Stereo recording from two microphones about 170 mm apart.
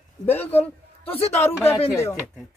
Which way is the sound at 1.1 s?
35° left (ahead or behind).